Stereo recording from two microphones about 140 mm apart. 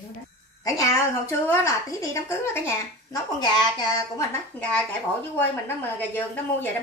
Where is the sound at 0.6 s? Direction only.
25° left (ahead or behind).